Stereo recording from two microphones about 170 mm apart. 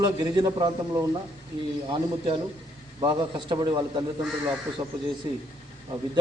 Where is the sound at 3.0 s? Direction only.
25° right (ahead or behind).